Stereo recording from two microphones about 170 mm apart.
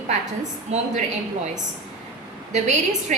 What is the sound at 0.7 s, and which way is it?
Speech, 40° right (ahead or behind).